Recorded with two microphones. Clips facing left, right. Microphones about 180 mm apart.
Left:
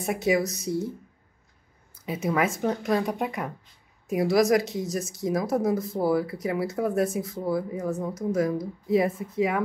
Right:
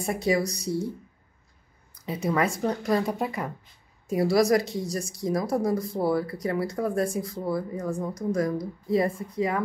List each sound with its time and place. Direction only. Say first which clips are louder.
0.0 s a woman's voice: left 1 dB; centre (ahead or behind)
2.0 s a woman's voice: even; 5° left (ahead or behind)